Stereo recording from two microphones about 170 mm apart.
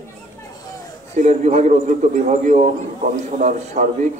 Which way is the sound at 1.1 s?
45° right (ahead or behind).